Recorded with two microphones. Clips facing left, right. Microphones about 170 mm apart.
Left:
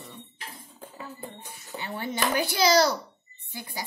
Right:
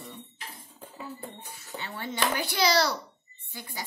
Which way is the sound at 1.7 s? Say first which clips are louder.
Left 3 dB; 15° left (ahead or behind).